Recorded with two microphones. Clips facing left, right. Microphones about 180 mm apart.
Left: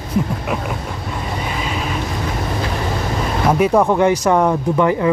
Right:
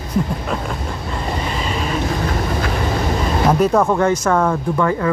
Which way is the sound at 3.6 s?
10° left (ahead or behind).